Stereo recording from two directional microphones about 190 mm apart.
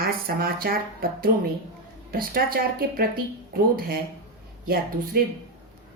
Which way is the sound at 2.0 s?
50° right (ahead or behind).